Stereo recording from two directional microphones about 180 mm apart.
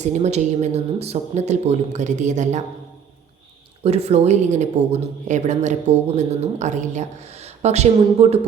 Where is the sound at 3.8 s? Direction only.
35° right (ahead or behind).